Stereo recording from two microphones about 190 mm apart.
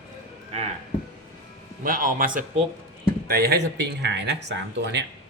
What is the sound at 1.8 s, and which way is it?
A man's voice, 45° right (ahead or behind).